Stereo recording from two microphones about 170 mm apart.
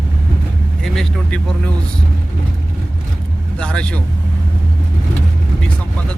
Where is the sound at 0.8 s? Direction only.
Centre (ahead or behind).